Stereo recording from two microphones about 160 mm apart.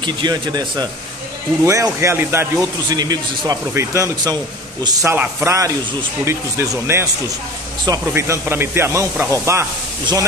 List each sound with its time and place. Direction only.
0.0 s a man's voice: 25° right (ahead or behind)